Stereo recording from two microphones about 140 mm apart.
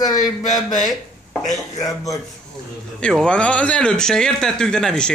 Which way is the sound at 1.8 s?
25° left (ahead or behind).